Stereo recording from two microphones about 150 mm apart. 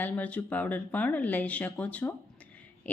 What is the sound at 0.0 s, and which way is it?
A woman's voice, 10° left (ahead or behind).